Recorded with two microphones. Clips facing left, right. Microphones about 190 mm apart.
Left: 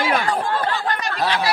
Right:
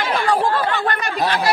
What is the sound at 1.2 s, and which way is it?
Chatter, 50° right (ahead or behind).